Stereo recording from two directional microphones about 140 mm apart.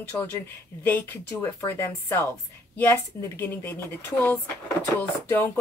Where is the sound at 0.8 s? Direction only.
15° left (ahead or behind).